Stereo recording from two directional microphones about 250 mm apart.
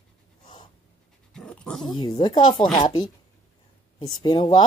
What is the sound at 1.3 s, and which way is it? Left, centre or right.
Dog, centre.